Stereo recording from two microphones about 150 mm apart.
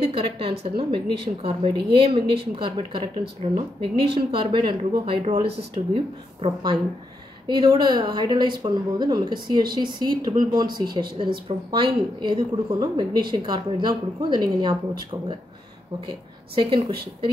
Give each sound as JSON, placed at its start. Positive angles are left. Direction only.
{"t": 0.0, "sound": "a woman's voice", "side_deg": -35}
{"t": 5.8, "sound": "speech", "side_deg": -50}
{"t": 6.4, "sound": "a woman's voice", "side_deg": -35}
{"t": 16.5, "sound": "a woman's voice", "side_deg": -35}